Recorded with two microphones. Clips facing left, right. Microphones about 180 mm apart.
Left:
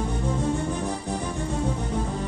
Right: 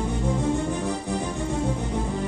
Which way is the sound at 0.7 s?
15° right (ahead or behind).